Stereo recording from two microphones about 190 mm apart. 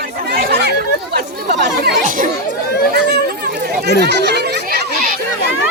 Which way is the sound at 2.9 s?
55° right (ahead or behind).